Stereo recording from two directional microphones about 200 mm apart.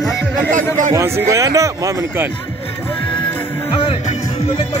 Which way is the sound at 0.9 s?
15° right (ahead or behind).